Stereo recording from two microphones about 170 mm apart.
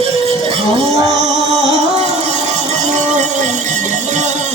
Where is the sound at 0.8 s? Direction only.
Centre (ahead or behind).